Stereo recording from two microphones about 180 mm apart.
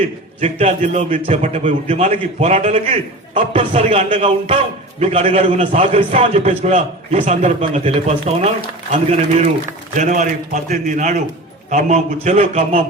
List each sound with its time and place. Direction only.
0.3 s a man's voice: 35° right (ahead or behind)